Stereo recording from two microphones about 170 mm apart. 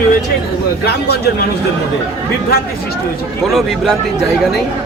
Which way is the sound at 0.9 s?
75° left (ahead or behind).